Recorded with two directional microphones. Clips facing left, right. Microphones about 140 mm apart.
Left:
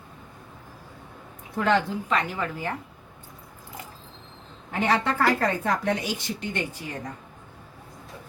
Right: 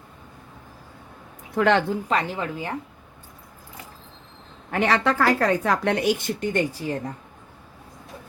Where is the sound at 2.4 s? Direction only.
20° right (ahead or behind).